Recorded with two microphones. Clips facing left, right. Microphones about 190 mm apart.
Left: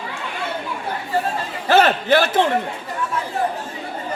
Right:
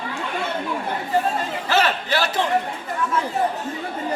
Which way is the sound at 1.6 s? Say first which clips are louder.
Left 7 dB; 55° left (ahead or behind).